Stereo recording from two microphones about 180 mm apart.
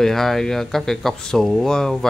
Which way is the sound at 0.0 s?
Centre (ahead or behind).